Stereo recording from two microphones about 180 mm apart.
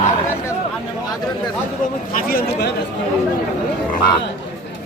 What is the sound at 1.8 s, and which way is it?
Speech, 50° left (ahead or behind).